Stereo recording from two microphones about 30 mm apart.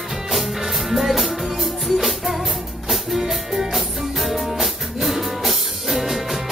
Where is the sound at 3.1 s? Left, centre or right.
Centre.